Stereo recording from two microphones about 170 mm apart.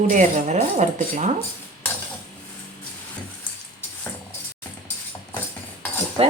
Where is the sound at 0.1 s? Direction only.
45° right (ahead or behind).